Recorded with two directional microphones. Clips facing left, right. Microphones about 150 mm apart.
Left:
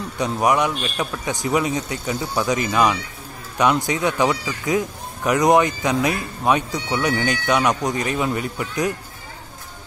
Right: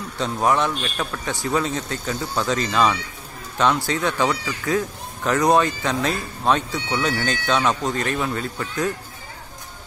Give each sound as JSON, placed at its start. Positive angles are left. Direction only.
{"t": 0.2, "sound": "speech", "side_deg": 15}